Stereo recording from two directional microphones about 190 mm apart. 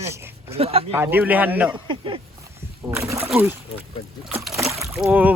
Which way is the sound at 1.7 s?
25° right (ahead or behind).